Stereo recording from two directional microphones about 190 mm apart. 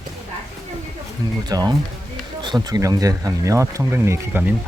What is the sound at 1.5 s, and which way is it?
Speech, 20° right (ahead or behind).